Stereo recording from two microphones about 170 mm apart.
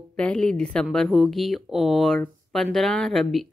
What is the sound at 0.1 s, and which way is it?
A woman's voice, 5° left (ahead or behind).